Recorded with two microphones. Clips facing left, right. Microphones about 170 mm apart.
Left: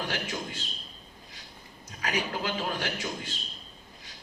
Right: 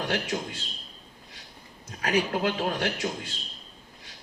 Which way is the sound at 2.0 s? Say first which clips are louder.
Right 6 dB; 55° right (ahead or behind).